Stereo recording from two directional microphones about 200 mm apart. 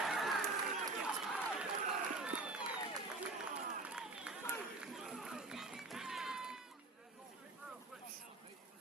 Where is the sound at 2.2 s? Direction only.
5° right (ahead or behind).